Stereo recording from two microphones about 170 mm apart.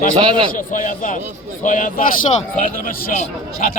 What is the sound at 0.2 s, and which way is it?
Speech, 30° right (ahead or behind).